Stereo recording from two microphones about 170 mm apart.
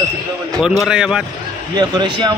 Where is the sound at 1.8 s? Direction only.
25° right (ahead or behind).